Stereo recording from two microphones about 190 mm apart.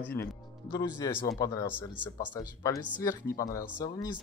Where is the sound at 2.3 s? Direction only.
15° left (ahead or behind).